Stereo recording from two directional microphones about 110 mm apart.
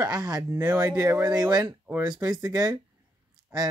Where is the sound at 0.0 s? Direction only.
40° right (ahead or behind).